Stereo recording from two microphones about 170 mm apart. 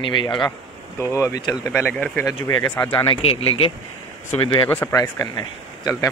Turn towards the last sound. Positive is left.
turn(degrees=20)  # may be behind; listen again after turning